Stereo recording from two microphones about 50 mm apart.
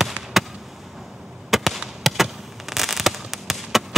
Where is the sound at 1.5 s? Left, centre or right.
Centre.